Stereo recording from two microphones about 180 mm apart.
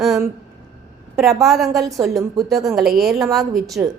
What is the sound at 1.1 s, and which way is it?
A woman's voice, centre (ahead or behind).